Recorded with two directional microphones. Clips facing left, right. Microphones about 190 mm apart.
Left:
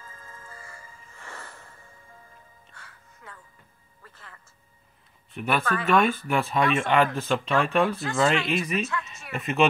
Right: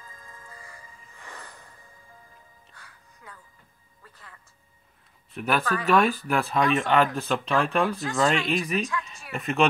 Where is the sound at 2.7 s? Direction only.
15° right (ahead or behind).